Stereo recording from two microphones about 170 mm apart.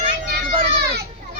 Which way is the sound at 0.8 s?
75° right (ahead or behind).